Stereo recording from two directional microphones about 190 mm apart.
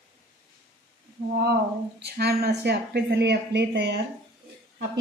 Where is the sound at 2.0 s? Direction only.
60° right (ahead or behind).